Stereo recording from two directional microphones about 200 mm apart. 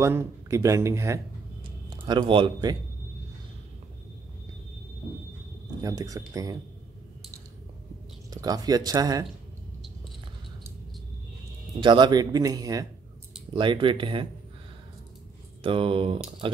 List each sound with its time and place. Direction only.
0.0 s speech: 15° right (ahead or behind)
5.8 s speech: 15° right (ahead or behind)
8.3 s speech: 20° right (ahead or behind)
11.8 s speech: 25° right (ahead or behind)
15.6 s speech: 25° right (ahead or behind)